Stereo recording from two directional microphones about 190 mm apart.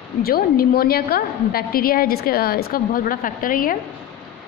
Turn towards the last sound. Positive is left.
turn(degrees=50)  # may be behind; listen again after turning